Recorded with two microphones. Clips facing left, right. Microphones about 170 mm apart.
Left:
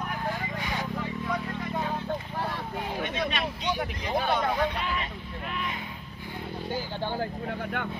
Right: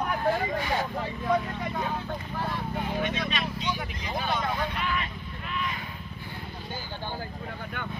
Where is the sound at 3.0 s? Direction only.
50° left (ahead or behind).